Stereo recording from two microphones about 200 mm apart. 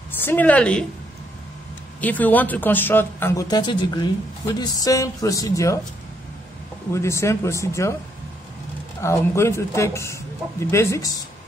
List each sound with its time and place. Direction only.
0.2 s speech: 10° left (ahead or behind)
2.0 s speech: 10° left (ahead or behind)
6.9 s speech: 15° left (ahead or behind)
9.0 s speech: 15° left (ahead or behind)